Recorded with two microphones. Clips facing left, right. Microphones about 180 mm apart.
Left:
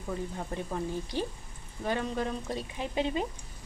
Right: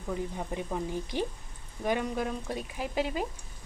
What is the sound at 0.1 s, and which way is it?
Speech, 15° right (ahead or behind).